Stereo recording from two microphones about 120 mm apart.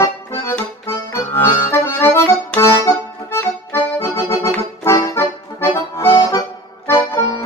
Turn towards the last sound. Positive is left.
turn(degrees=20)  # may be behind; listen again after turning